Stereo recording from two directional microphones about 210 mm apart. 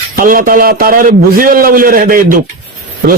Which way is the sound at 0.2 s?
40° right (ahead or behind).